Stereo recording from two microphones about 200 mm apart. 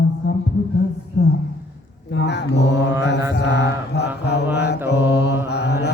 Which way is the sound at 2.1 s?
60° left (ahead or behind).